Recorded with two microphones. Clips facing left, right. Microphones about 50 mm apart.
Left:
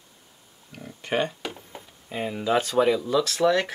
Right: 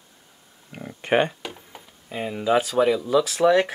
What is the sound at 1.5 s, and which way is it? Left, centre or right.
Speech, centre.